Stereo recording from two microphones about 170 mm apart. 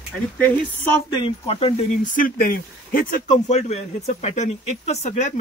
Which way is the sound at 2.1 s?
60° left (ahead or behind).